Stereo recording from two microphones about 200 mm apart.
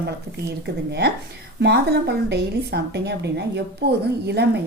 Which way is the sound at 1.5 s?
55° right (ahead or behind).